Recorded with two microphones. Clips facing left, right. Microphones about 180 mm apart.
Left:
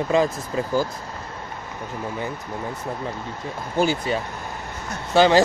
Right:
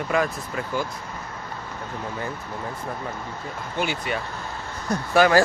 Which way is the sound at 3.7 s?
35° left (ahead or behind).